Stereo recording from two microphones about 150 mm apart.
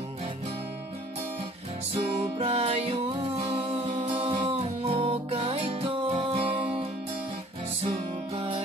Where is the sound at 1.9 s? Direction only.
40° right (ahead or behind).